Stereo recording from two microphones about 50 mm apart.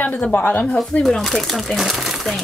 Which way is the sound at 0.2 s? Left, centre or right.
Left.